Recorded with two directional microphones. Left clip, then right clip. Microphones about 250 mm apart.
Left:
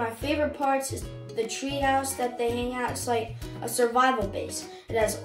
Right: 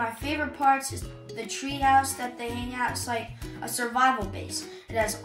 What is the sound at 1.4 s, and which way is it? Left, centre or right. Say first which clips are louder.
Speech: left 1 dB; centre.